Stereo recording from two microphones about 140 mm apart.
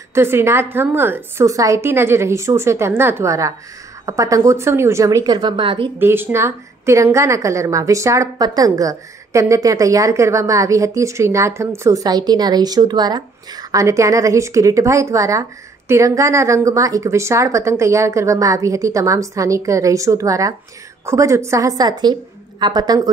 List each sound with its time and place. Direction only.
0.1 s a woman's voice: 15° right (ahead or behind); by 5.9 s 40° right (ahead or behind)
5.9 s a woman's voice: 15° right (ahead or behind)